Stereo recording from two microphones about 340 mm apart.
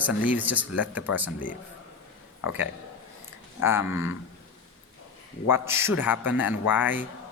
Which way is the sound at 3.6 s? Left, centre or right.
Centre.